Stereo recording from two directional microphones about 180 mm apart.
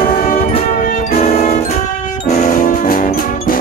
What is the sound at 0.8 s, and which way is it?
Music, 45° left (ahead or behind).